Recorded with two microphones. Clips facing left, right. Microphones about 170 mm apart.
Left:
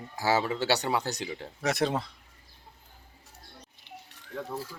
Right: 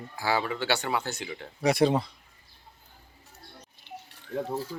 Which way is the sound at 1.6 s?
Centre (ahead or behind).